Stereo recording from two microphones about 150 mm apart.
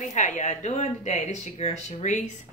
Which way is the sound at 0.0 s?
55° left (ahead or behind).